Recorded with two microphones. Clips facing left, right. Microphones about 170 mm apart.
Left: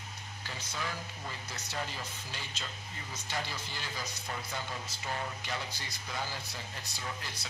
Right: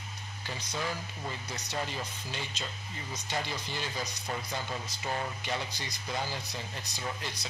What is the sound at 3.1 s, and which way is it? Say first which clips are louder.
Speech: right 3 dB; 20° right (ahead or behind).